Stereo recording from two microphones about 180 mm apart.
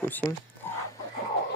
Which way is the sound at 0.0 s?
10° left (ahead or behind).